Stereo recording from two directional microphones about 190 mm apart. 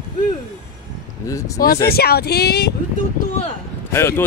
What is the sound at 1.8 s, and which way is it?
Speech, 55° left (ahead or behind).